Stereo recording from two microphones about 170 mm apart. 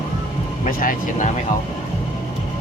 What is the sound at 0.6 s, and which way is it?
Speech, 50° left (ahead or behind).